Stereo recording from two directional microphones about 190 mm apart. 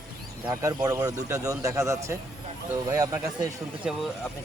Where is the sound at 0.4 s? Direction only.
20° right (ahead or behind).